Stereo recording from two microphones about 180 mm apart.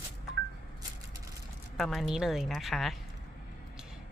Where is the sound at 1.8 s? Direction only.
Centre (ahead or behind).